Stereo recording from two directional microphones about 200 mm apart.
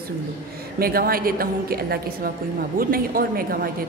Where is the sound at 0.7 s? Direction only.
50° right (ahead or behind).